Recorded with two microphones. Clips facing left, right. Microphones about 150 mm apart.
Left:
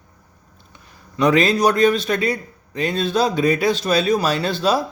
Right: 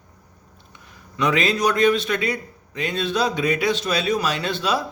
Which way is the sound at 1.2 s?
35° left (ahead or behind).